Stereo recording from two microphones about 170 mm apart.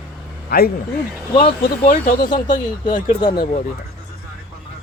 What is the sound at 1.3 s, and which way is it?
Speech, 30° left (ahead or behind).